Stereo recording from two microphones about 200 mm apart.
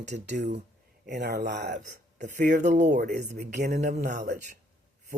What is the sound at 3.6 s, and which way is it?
Speech, 55° right (ahead or behind).